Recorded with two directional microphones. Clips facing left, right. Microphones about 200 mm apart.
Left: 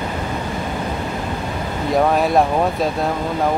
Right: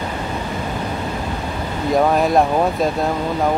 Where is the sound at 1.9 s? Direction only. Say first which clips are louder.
Even; centre (ahead or behind).